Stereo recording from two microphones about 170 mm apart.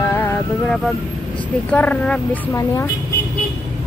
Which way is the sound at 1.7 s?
10° left (ahead or behind).